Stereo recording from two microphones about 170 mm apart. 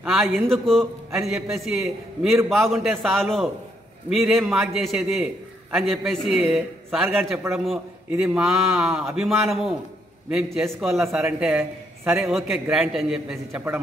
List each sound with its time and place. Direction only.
0.0 s a sound: centre (ahead or behind)
0.5 s a man's voice: centre (ahead or behind)
7.2 s a man's voice: 15° right (ahead or behind)
8.1 s a man's voice: 5° right (ahead or behind)
10.9 s a man's voice: 15° right (ahead or behind)
12.2 s a man's voice: centre (ahead or behind)